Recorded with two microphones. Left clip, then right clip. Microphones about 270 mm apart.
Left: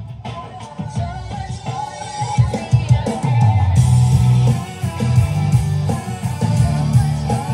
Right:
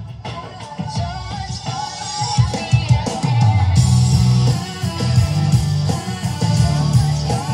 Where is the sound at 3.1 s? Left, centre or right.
Right.